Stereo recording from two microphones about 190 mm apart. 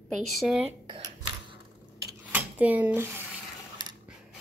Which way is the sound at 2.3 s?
10° right (ahead or behind).